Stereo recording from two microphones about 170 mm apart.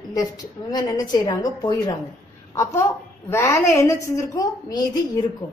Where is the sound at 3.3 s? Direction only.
15° left (ahead or behind).